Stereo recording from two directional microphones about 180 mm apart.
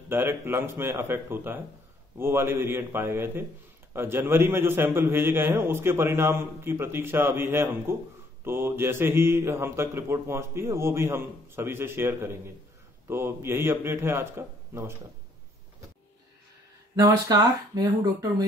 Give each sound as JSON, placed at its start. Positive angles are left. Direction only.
{"t": 0.1, "sound": "a man's voice", "side_deg": -10}
{"t": 16.9, "sound": "speech", "side_deg": -20}